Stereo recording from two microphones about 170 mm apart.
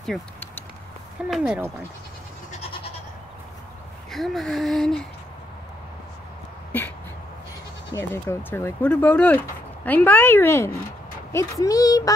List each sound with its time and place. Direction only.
0.0 s speech: centre (ahead or behind)
4.1 s speech: centre (ahead or behind)
7.9 s a child's voice: 15° left (ahead or behind)